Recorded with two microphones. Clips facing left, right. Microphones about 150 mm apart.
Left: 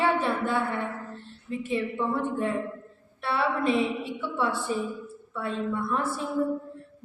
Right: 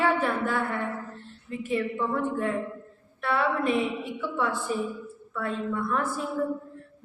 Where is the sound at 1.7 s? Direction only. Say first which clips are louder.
Right 1 dB; 25° left (ahead or behind).